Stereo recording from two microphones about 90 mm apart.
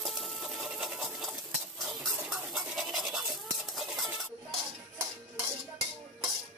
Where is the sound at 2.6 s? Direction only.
5° right (ahead or behind).